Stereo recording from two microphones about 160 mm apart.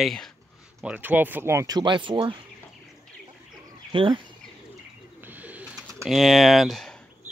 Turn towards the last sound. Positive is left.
turn(degrees=0)  # may be behind; listen again after turning